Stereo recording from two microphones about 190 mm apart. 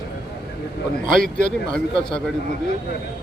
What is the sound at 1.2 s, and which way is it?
Speech, 45° right (ahead or behind).